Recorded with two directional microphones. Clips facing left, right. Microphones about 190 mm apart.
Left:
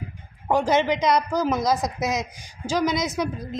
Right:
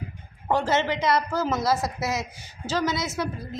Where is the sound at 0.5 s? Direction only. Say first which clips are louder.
Left 3 dB; 15° left (ahead or behind).